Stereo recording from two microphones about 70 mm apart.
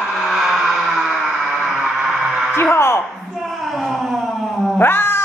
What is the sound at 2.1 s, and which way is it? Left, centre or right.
Music, centre.